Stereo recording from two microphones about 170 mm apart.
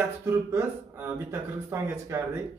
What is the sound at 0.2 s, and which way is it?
A man's voice, 15° right (ahead or behind).